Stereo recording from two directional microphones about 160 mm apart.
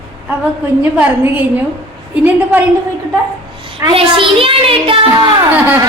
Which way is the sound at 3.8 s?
35° right (ahead or behind).